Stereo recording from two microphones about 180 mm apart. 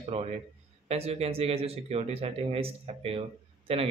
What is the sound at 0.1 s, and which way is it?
Speech, 35° right (ahead or behind).